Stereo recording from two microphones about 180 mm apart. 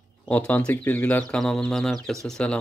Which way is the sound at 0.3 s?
5° left (ahead or behind).